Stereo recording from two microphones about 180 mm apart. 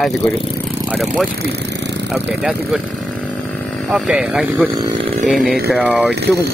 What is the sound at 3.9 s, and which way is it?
Speech, 5° right (ahead or behind).